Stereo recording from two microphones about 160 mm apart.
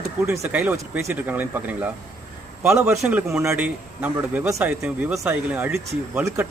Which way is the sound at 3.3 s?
5° right (ahead or behind).